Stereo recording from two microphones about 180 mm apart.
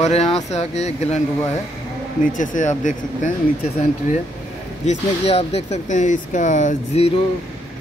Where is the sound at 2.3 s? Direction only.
45° left (ahead or behind).